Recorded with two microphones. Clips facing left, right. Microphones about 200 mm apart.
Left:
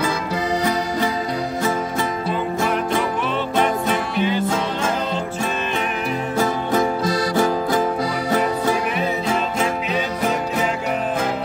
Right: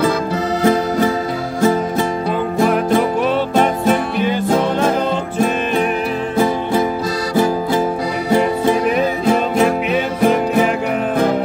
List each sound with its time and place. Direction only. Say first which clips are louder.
1.6 s music: right 10 dB; 35° right (ahead or behind)
4.3 s music: right 5 dB; 50° right (ahead or behind)
7.3 s music: right 6 dB; 10° right (ahead or behind)